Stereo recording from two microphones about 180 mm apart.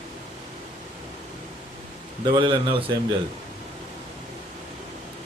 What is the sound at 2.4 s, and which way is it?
Speech, 25° right (ahead or behind).